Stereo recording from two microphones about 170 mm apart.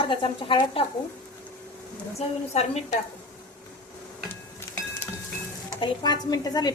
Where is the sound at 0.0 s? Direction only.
30° left (ahead or behind).